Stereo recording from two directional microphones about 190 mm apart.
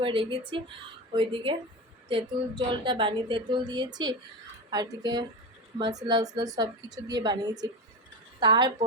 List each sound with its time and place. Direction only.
0.0 s a woman's voice: 25° right (ahead or behind)